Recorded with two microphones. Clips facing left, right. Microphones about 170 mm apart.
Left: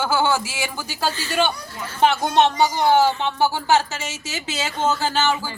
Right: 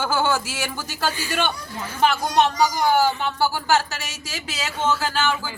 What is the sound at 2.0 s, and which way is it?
A woman's voice, 25° left (ahead or behind).